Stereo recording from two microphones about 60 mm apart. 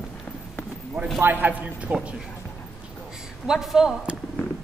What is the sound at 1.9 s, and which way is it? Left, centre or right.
Music, right.